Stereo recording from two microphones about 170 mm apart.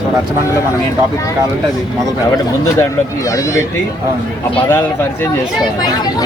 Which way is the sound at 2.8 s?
20° left (ahead or behind).